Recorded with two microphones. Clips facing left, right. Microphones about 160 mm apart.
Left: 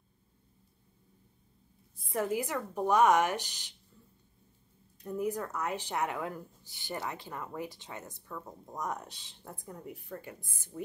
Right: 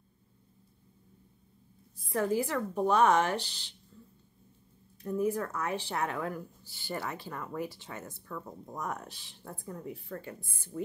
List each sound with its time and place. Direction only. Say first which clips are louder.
2.1 s speech: right 3 dB; 20° left (ahead or behind)
5.0 s speech: right 3 dB; 15° left (ahead or behind)